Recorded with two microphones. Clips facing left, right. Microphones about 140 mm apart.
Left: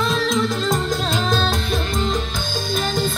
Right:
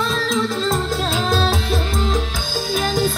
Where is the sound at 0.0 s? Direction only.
Centre (ahead or behind).